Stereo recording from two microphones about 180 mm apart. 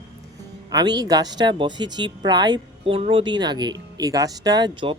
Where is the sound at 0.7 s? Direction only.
20° right (ahead or behind).